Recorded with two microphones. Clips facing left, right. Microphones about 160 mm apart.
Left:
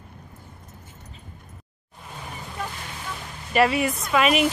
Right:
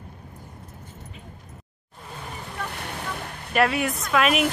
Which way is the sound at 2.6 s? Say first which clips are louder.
Right 2 dB; 60° right (ahead or behind).